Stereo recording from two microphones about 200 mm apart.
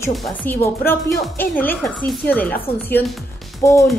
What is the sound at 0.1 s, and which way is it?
A woman's voice, 5° left (ahead or behind).